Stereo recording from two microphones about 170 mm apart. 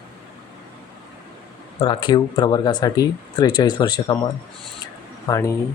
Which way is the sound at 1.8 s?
25° left (ahead or behind).